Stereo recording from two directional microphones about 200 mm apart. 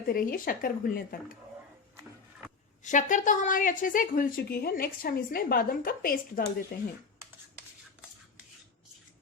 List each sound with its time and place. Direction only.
0.1 s a woman's voice: 45° left (ahead or behind)
2.8 s a woman's voice: 40° left (ahead or behind)